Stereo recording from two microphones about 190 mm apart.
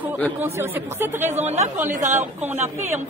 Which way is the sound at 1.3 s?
35° right (ahead or behind).